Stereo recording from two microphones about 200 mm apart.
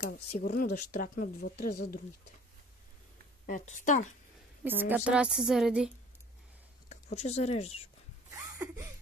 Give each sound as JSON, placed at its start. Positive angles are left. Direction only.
{"t": 0.4, "sound": "speech", "side_deg": 45}
{"t": 3.4, "sound": "speech", "side_deg": 40}
{"t": 4.6, "sound": "a woman's voice", "side_deg": -10}
{"t": 7.2, "sound": "speech", "side_deg": 35}
{"t": 8.5, "sound": "a sound", "side_deg": -15}